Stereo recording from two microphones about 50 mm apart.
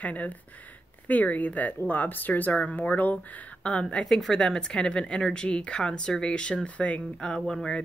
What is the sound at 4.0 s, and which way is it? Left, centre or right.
Speech, centre.